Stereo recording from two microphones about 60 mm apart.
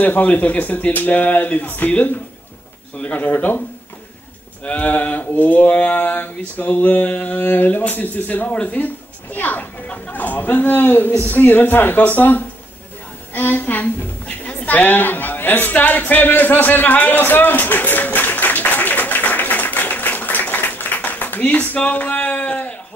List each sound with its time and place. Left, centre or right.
0.0 s speech: left
4.6 s speech: left
9.8 s speech: centre
10.2 s speech: left
14.2 s a sound: left